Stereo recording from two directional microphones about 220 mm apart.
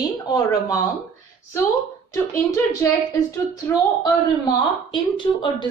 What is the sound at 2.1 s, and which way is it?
Speech, 15° left (ahead or behind).